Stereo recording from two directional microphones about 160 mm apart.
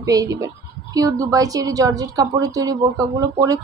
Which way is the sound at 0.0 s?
20° right (ahead or behind).